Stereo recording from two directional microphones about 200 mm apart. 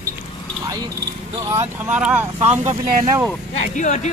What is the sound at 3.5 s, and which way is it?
Speech, 35° left (ahead or behind).